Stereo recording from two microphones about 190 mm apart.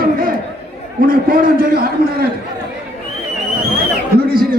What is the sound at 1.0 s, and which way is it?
A man's voice, 50° right (ahead or behind).